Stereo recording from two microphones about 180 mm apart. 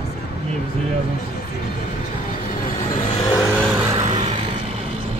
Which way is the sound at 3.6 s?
10° right (ahead or behind).